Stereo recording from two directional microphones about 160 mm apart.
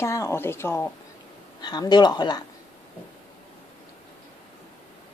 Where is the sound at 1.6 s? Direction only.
25° left (ahead or behind).